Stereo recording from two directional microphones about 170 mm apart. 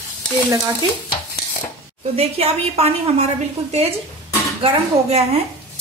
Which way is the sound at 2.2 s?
40° right (ahead or behind).